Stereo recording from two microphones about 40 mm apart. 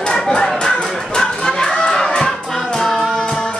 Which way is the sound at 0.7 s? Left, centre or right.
Centre.